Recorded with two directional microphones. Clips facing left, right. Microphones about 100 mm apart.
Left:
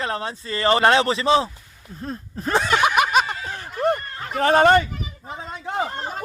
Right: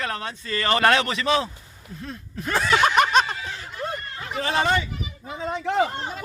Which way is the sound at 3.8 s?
50° left (ahead or behind).